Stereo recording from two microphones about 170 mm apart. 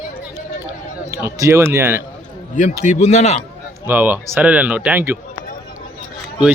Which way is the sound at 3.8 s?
10° right (ahead or behind).